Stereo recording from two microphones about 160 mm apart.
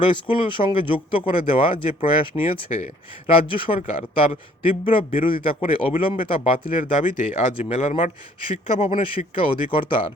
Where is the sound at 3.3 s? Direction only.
35° left (ahead or behind).